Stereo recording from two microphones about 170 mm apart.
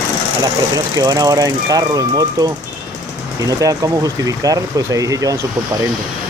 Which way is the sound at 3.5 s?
20° right (ahead or behind).